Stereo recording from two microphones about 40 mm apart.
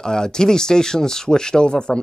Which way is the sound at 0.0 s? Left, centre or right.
Centre.